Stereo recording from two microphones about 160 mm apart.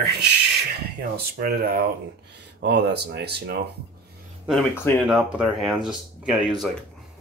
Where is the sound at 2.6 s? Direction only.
90° right.